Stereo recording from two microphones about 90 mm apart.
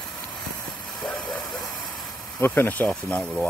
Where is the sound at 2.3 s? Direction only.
25° left (ahead or behind).